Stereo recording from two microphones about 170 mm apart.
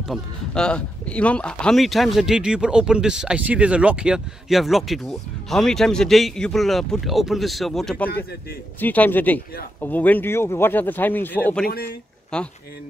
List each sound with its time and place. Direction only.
0.1 s speech: 5° left (ahead or behind)
11.6 s speech: 65° left (ahead or behind)
12.3 s speech: 5° left (ahead or behind)